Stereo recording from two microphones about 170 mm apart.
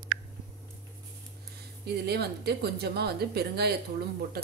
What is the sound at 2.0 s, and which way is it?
A woman's voice, 70° right (ahead or behind).